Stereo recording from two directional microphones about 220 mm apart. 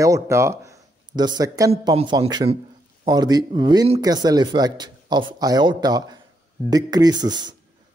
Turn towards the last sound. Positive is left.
turn(degrees=-20)  # may be behind; listen again after turning